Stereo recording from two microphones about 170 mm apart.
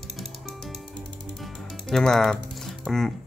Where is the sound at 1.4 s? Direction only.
5° left (ahead or behind).